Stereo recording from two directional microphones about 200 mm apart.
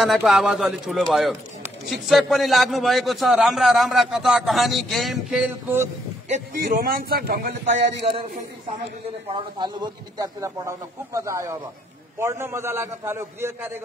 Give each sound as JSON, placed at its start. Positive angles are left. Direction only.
{"t": 0.0, "sound": "a man's voice", "side_deg": 0}
{"t": 6.2, "sound": "speech", "side_deg": -40}
{"t": 9.6, "sound": "speech", "side_deg": -20}